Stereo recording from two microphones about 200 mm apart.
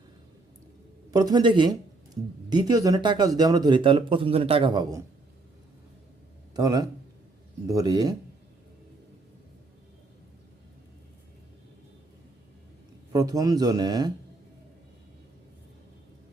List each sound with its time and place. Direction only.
1.1 s a man's voice: 20° right (ahead or behind)
6.5 s a man's voice: 20° right (ahead or behind)
13.1 s a man's voice: 15° right (ahead or behind)